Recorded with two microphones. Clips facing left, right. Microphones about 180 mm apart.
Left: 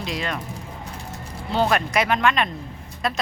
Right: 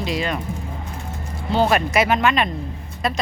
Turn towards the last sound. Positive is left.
turn(degrees=0)  # may be behind; listen again after turning